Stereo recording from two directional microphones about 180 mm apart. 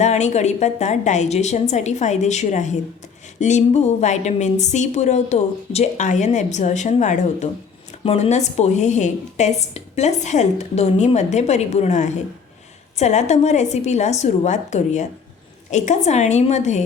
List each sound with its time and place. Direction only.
0.0 s a woman's voice: 40° left (ahead or behind)